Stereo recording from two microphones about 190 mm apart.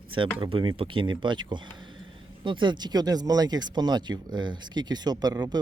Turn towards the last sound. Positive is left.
turn(degrees=-20)  # may be behind; listen again after turning